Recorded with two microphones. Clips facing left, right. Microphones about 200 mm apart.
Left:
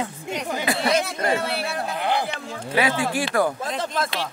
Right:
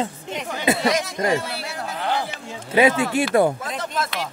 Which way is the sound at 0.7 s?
25° right (ahead or behind).